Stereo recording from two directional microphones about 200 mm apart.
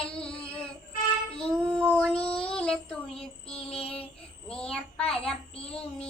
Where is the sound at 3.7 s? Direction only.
30° left (ahead or behind).